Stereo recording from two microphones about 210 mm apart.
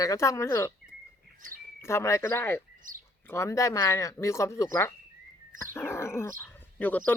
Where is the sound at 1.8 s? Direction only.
15° left (ahead or behind).